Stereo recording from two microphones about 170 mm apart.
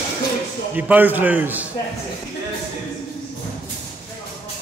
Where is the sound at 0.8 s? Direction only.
10° right (ahead or behind).